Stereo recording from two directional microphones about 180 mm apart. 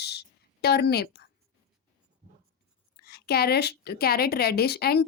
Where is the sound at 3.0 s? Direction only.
60° left (ahead or behind).